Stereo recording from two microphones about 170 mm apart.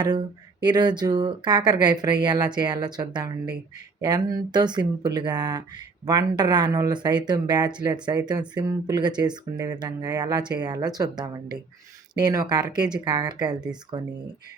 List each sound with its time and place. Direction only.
0.6 s speech: 25° right (ahead or behind)